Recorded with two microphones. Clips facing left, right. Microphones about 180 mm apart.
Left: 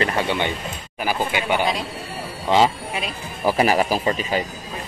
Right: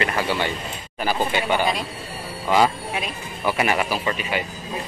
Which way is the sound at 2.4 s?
25° left (ahead or behind).